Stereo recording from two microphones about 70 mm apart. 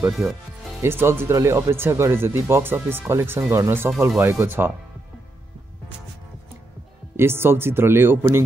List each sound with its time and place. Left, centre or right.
0.8 s speech: right
7.2 s speech: right